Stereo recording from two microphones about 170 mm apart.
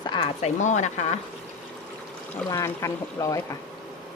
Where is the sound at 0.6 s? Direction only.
45° left (ahead or behind).